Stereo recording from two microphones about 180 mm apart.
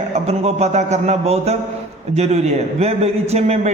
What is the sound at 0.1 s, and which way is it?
A man's voice, 35° right (ahead or behind).